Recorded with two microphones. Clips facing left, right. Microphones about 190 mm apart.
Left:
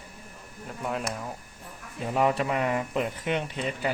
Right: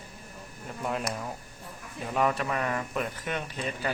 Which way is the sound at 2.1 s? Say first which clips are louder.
Left 3 dB; 20° left (ahead or behind).